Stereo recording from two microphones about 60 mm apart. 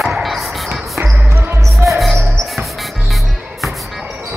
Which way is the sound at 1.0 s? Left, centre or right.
Right.